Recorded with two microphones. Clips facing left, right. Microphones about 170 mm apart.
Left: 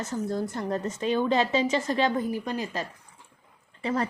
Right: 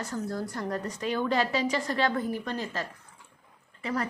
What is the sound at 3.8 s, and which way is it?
Speech, 30° left (ahead or behind).